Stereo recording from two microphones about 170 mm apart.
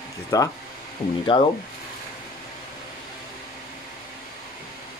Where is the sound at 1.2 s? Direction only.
30° left (ahead or behind).